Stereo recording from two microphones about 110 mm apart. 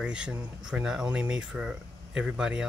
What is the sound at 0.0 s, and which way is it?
Speech, 10° right (ahead or behind).